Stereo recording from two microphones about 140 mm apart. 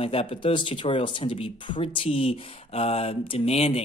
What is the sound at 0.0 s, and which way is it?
Speech, 45° left (ahead or behind).